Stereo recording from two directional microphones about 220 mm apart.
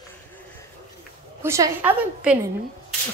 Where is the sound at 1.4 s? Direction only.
10° right (ahead or behind).